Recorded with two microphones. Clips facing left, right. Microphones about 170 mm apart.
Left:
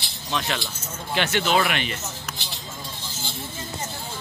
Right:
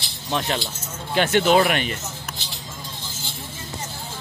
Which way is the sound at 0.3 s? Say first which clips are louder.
Right 3 dB; 35° right (ahead or behind).